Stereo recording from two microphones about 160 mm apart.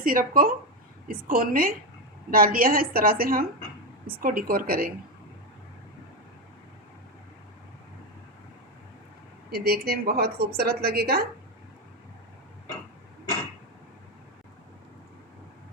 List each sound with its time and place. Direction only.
0.0 s a woman's voice: 60° right (ahead or behind)
9.5 s a woman's voice: 75° right (ahead or behind)